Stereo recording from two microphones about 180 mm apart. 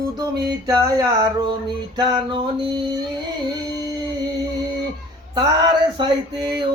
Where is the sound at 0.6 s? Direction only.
20° right (ahead or behind).